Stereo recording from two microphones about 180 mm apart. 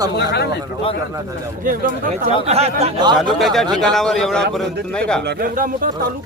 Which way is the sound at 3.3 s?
Centre (ahead or behind).